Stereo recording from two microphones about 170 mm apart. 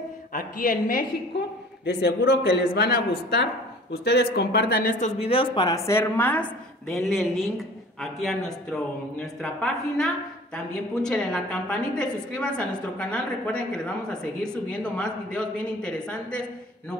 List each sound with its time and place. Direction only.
0.3 s a woman's voice: 50° left (ahead or behind)
1.3 s a sound: 85° left
1.9 s speech: 80° left; by 5.1 s 55° left (ahead or behind)
5.2 s a woman's voice: 30° left (ahead or behind); by 16.4 s 5° left (ahead or behind)